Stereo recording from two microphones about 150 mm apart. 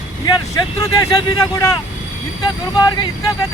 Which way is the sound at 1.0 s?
20° left (ahead or behind).